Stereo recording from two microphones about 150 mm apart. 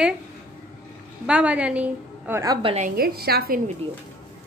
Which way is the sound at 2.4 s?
25° right (ahead or behind).